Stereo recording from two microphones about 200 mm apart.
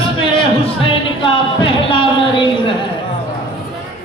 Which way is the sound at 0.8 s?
25° left (ahead or behind).